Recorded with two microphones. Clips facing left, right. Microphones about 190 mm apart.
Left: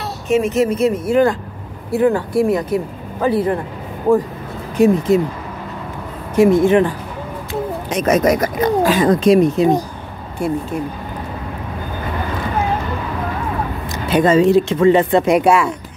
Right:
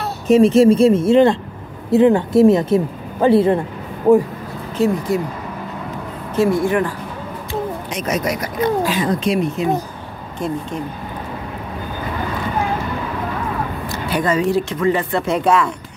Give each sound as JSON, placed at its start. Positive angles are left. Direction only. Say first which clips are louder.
{"t": 0.3, "sound": "speech", "louder": "right 5 dB", "side_deg": -30}
{"t": 4.7, "sound": "speech", "louder": "left 5 dB", "side_deg": 20}
{"t": 6.3, "sound": "speech", "louder": "left 5 dB", "side_deg": 20}
{"t": 7.9, "sound": "speech", "louder": "left 9 dB", "side_deg": 50}
{"t": 10.4, "sound": "speech", "louder": "left 3 dB", "side_deg": 10}
{"t": 13.8, "sound": "speech", "louder": "left 6 dB", "side_deg": 20}